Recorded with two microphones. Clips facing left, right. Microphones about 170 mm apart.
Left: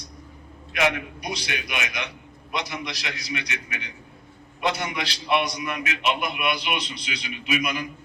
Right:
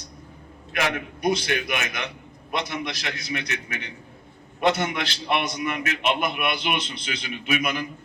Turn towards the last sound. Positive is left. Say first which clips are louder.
# right 1 dB
turn(degrees=-50)  # may be behind; listen again after turning